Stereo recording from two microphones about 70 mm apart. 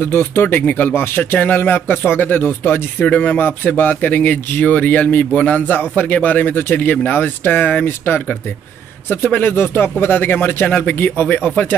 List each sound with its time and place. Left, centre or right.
0.0 s speech: left